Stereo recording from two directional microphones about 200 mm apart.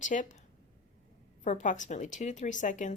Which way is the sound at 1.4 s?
40° left (ahead or behind).